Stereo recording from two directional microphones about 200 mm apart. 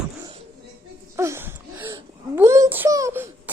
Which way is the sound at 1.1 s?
15° right (ahead or behind).